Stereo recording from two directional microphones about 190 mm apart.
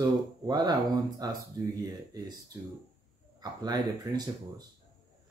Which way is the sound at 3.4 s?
20° right (ahead or behind).